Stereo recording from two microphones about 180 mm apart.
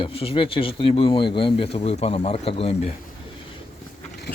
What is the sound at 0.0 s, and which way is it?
Speech, 30° left (ahead or behind).